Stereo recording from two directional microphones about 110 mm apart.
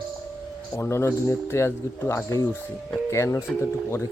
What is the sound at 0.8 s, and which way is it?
Speech, 25° left (ahead or behind).